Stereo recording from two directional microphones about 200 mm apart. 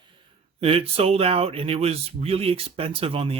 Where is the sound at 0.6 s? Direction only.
30° right (ahead or behind).